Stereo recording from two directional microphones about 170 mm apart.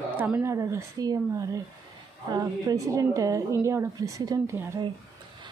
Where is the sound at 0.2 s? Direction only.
15° right (ahead or behind).